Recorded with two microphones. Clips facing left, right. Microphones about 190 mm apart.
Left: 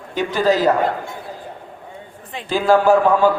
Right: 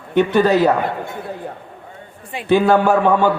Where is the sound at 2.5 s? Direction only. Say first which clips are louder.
Right 1 dB; 65° right (ahead or behind).